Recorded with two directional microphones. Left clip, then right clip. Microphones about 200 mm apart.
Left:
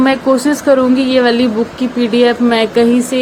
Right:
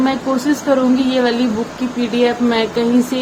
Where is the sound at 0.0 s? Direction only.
25° left (ahead or behind).